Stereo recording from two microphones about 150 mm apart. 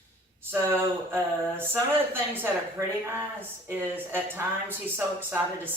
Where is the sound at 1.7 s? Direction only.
15° right (ahead or behind).